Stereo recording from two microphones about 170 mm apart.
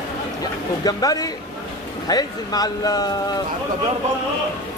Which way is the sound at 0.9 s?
25° left (ahead or behind).